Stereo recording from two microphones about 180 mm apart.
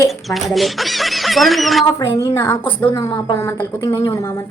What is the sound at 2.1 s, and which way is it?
A woman's voice, 15° left (ahead or behind).